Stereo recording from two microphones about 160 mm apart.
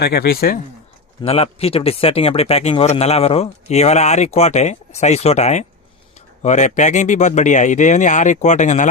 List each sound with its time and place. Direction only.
0.0 s speech: 85° left; by 0.6 s 70° left (ahead or behind)
1.2 s speech: 40° left (ahead or behind)